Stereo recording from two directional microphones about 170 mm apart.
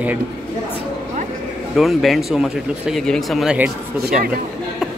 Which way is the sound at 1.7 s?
Centre (ahead or behind).